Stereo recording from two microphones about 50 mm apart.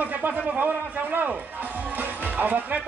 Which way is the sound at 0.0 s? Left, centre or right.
Right.